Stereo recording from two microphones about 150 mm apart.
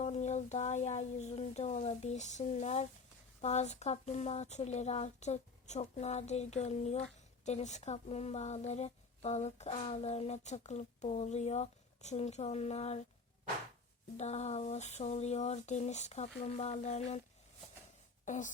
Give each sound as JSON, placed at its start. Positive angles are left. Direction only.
{"t": 0.0, "sound": "speech", "side_deg": 50}
{"t": 14.2, "sound": "speech", "side_deg": 45}
{"t": 18.3, "sound": "speech", "side_deg": 55}